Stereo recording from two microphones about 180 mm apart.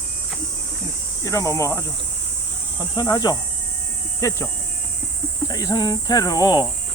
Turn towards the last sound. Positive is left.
turn(degrees=20)  # may be behind; listen again after turning